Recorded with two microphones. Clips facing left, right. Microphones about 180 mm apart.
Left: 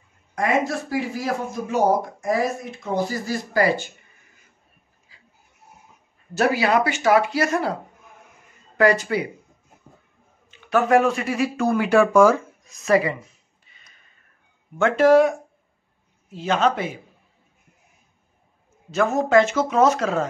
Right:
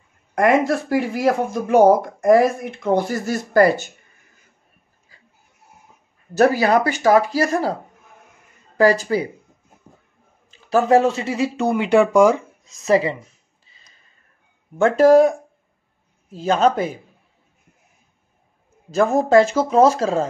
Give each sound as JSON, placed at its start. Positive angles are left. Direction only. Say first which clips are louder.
{"t": 0.3, "sound": "speech", "louder": "right 6 dB", "side_deg": -60}
{"t": 6.3, "sound": "speech", "louder": "right 4 dB", "side_deg": -45}
{"t": 8.7, "sound": "speech", "louder": "right 3 dB", "side_deg": -30}
{"t": 10.5, "sound": "speech", "louder": "right 3 dB", "side_deg": -30}
{"t": 14.8, "sound": "speech", "louder": "right 3 dB", "side_deg": -35}
{"t": 18.9, "sound": "speech", "louder": "right 4 dB", "side_deg": -35}